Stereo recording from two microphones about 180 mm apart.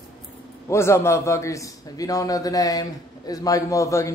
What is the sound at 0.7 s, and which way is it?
A man's voice, 15° left (ahead or behind).